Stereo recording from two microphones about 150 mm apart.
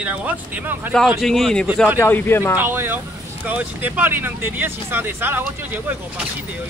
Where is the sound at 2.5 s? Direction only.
15° right (ahead or behind).